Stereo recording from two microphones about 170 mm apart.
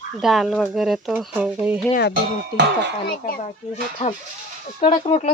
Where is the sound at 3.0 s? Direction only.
60° left (ahead or behind).